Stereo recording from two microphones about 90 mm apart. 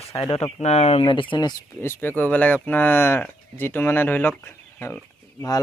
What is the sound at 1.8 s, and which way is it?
Speech, 25° left (ahead or behind).